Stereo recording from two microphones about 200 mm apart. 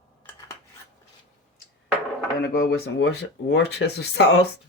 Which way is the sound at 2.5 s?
50° left (ahead or behind).